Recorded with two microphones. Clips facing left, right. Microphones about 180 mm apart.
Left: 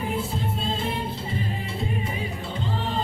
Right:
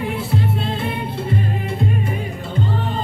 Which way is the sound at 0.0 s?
70° right (ahead or behind).